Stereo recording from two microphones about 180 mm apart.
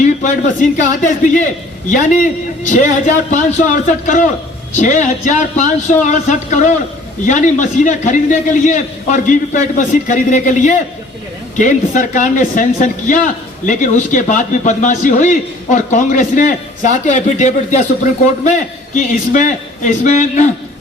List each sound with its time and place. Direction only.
0.0 s a man's voice: 45° left (ahead or behind)
3.3 s a man's voice: 45° left (ahead or behind)
18.9 s a man's voice: 45° left (ahead or behind)